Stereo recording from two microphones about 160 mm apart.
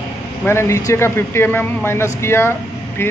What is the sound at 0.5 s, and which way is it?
Speech, 15° left (ahead or behind).